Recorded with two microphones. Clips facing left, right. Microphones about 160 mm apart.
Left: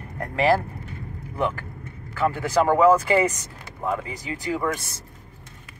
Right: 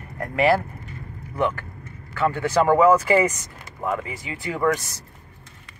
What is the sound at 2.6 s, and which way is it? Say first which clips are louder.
Speech: right 1 dB; 10° right (ahead or behind).